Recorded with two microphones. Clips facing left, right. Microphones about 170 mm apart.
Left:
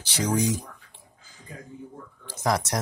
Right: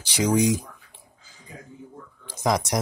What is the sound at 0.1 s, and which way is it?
Speech, 15° right (ahead or behind).